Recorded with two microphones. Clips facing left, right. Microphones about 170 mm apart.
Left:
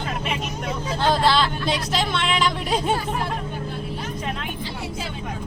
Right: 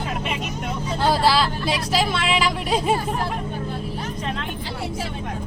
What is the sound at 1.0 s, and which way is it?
Vehicle, 5° right (ahead or behind).